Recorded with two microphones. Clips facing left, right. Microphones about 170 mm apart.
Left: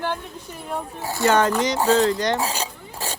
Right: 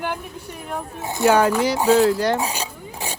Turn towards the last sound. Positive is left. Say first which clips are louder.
# right 1 dB
turn(degrees=-15)  # may be behind; listen again after turning